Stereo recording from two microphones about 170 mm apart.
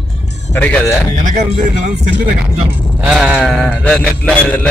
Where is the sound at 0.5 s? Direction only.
10° left (ahead or behind).